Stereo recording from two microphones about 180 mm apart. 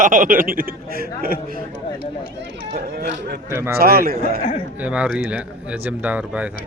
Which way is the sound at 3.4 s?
15° right (ahead or behind).